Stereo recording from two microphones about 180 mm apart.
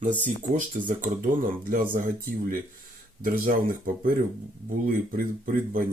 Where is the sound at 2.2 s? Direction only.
50° right (ahead or behind).